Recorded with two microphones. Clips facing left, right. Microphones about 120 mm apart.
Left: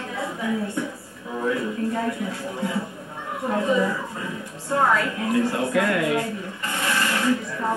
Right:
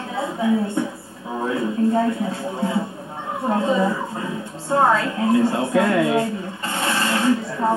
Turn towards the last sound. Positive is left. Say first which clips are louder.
# right 4 dB
turn(degrees=-30)  # may be behind; listen again after turning